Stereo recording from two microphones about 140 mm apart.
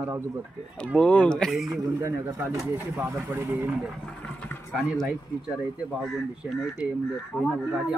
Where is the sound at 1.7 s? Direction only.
20° right (ahead or behind).